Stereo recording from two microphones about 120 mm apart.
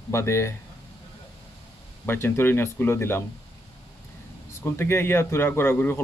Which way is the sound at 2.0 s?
20° left (ahead or behind).